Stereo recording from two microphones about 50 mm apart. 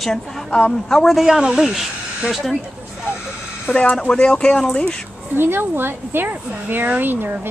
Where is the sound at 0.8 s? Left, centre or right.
Centre.